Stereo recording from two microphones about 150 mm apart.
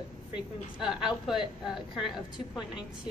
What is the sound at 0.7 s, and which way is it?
A woman's voice, 5° right (ahead or behind).